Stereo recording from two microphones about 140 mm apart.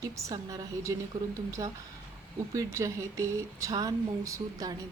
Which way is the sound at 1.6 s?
30° right (ahead or behind).